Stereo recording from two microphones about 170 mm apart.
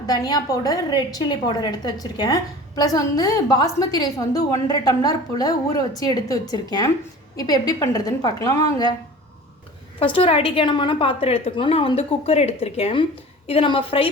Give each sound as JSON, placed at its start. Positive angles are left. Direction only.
{"t": 0.0, "sound": "a woman's voice", "side_deg": 25}
{"t": 10.0, "sound": "a woman's voice", "side_deg": 35}